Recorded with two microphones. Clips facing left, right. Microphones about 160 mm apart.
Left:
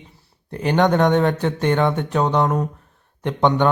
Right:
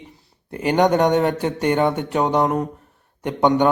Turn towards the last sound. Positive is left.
turn(degrees=-10)  # may be behind; listen again after turning